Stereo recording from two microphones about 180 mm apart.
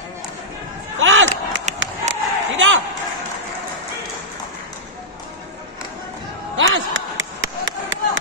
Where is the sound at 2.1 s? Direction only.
40° right (ahead or behind).